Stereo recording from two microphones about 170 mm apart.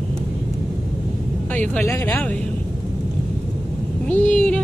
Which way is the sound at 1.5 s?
10° left (ahead or behind).